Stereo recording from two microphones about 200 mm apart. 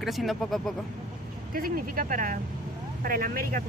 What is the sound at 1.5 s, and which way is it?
Speech, 45° right (ahead or behind).